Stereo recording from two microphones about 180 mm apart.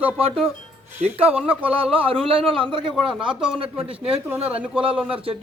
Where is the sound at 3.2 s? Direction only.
30° right (ahead or behind).